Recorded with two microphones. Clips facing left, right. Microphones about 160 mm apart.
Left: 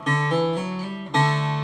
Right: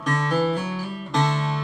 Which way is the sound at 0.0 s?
20° left (ahead or behind).